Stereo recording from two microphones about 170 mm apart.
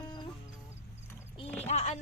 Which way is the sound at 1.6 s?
40° left (ahead or behind).